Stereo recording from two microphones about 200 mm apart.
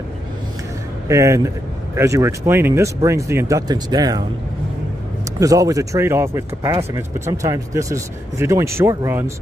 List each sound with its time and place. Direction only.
1.0 s speech: 15° right (ahead or behind)
5.4 s speech: 15° right (ahead or behind)
6.7 s speech: 25° right (ahead or behind)
7.0 s speech: 15° right (ahead or behind)